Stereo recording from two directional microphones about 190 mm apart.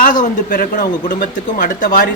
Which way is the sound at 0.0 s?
45° left (ahead or behind).